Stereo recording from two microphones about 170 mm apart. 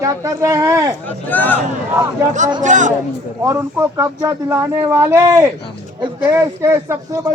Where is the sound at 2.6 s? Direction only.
45° right (ahead or behind).